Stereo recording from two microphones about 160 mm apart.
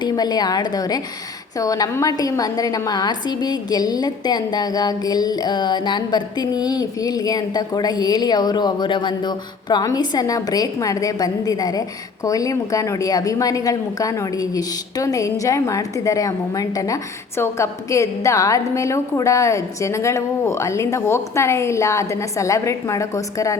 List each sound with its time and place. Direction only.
0.0 s a woman's voice: 25° left (ahead or behind)